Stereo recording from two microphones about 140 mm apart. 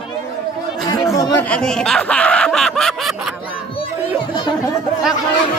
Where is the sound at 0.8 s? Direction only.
25° left (ahead or behind).